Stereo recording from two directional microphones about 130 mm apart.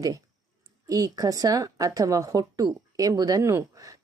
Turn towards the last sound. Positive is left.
turn(degrees=-25)  # may be behind; listen again after turning